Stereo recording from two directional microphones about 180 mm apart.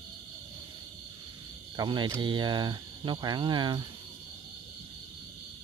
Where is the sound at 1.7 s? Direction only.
25° right (ahead or behind).